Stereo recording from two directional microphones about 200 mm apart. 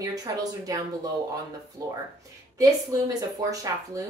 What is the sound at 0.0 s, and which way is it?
Speech, 20° right (ahead or behind).